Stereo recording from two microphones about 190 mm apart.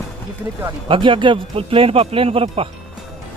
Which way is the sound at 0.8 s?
25° right (ahead or behind).